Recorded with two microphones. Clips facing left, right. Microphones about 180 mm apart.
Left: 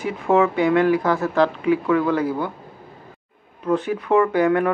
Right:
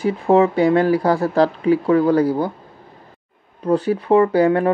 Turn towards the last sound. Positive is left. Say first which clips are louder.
# right 3 dB
turn(degrees=-35)  # may be behind; listen again after turning